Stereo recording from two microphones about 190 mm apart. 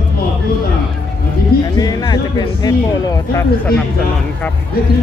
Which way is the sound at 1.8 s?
20° left (ahead or behind).